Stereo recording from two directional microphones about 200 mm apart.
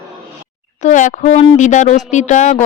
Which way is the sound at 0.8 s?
40° left (ahead or behind).